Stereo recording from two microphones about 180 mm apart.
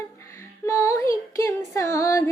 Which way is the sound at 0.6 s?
15° left (ahead or behind).